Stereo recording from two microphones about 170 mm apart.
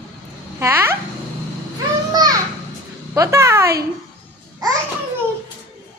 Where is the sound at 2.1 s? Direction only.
20° right (ahead or behind).